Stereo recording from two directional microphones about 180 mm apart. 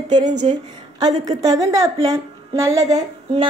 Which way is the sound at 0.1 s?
25° right (ahead or behind).